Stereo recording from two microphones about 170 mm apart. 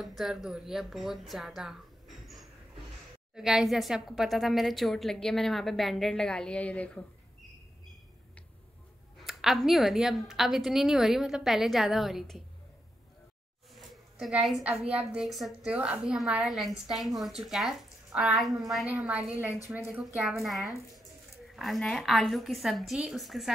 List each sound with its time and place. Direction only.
0.0 s a woman's voice: centre (ahead or behind)
9.2 s a woman's voice: centre (ahead or behind)
13.7 s a sound: 5° right (ahead or behind)
14.5 s a woman's voice: 5° right (ahead or behind)